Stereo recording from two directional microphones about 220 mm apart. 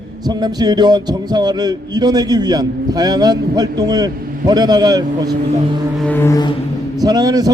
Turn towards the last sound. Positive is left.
turn(degrees=-15)  # may be behind; listen again after turning